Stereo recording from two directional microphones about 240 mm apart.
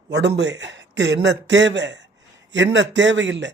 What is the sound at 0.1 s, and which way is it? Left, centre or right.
Speech, right.